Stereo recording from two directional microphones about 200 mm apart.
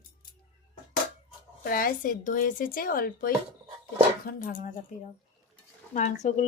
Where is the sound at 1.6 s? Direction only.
45° left (ahead or behind).